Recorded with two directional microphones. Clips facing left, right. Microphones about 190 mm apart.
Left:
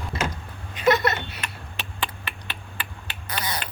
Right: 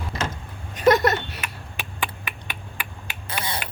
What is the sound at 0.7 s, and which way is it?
Speech, 45° right (ahead or behind).